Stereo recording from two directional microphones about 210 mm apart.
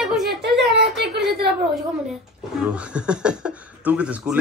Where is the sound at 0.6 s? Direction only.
55° right (ahead or behind).